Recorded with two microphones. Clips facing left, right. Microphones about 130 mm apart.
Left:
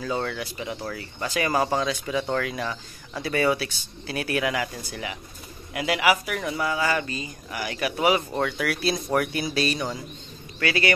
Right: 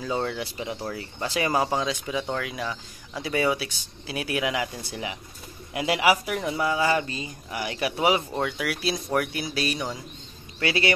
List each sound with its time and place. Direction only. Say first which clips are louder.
0.0 s speech: even; 20° right (ahead or behind)
1.5 s speech: left 2 dB; 15° right (ahead or behind)
8.4 s speech: left 2 dB; 10° right (ahead or behind)
10.6 s speech: even; 25° right (ahead or behind)